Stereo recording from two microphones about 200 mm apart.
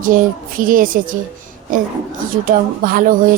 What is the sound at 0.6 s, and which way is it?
Speech, 45° right (ahead or behind).